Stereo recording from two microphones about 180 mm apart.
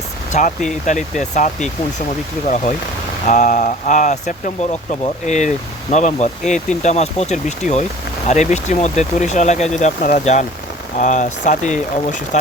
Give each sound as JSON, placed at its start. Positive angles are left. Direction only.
{"t": 0.3, "sound": "speech", "side_deg": 40}
{"t": 3.2, "sound": "speech", "side_deg": 45}